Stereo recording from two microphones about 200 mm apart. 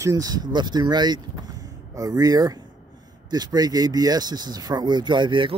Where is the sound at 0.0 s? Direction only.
15° right (ahead or behind).